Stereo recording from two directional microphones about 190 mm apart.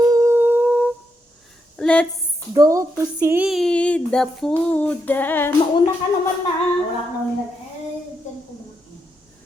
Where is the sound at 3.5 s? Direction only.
Centre (ahead or behind).